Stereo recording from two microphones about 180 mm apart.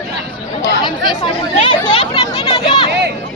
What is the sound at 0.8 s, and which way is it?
Chatter, 25° left (ahead or behind).